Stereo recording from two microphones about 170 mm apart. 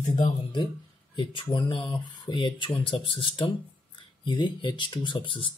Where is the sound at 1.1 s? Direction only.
30° left (ahead or behind).